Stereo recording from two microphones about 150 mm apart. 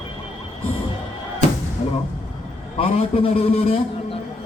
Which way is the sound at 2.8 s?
40° left (ahead or behind).